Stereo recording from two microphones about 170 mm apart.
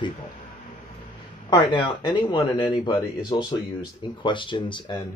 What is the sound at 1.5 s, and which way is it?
Speech, 25° left (ahead or behind).